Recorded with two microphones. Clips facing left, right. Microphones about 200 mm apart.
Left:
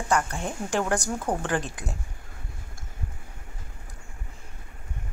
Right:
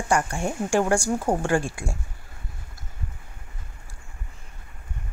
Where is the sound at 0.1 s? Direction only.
15° right (ahead or behind).